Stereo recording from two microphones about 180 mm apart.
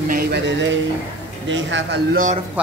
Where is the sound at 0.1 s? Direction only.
60° right (ahead or behind); by 2.0 s 85° right.